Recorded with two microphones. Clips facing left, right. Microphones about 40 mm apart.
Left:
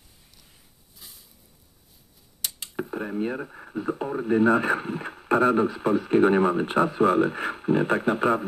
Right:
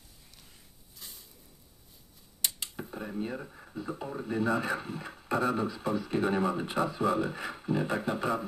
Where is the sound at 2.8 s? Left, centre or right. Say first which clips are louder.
Left 9 dB; left.